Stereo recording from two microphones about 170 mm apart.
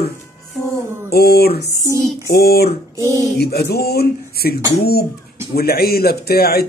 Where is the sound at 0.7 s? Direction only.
15° right (ahead or behind).